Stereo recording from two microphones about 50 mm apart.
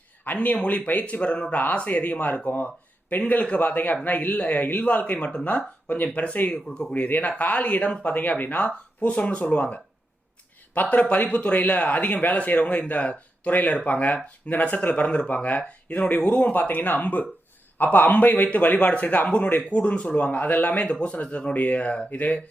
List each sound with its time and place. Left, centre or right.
0.3 s speech: left